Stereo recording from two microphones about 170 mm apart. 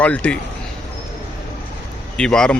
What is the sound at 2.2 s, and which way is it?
Speech, 5° left (ahead or behind).